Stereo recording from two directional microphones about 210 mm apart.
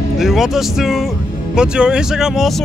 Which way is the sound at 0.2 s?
Centre (ahead or behind).